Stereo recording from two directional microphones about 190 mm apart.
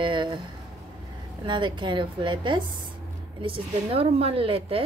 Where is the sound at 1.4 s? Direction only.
25° right (ahead or behind).